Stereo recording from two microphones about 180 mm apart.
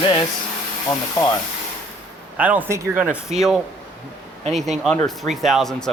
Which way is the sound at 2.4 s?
10° right (ahead or behind).